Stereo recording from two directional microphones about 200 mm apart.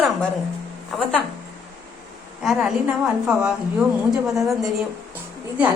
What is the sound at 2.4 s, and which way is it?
Speech, centre (ahead or behind).